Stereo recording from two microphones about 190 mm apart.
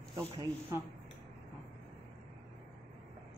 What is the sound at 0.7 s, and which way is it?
Speech, 15° right (ahead or behind).